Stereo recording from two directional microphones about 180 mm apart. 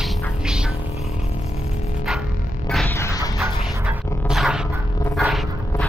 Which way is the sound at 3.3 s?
Centre (ahead or behind).